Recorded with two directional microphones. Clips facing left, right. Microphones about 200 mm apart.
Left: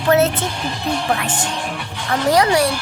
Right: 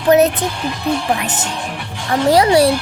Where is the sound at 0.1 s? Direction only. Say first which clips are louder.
Right 4 dB; 15° right (ahead or behind).